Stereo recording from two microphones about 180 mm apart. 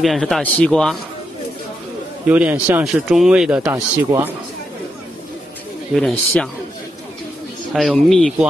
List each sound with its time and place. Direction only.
0.0 s speech: centre (ahead or behind)
2.2 s speech: 10° right (ahead or behind)
3.7 s speech: 15° right (ahead or behind)
5.9 s speech: 5° left (ahead or behind)
7.7 s speech: centre (ahead or behind)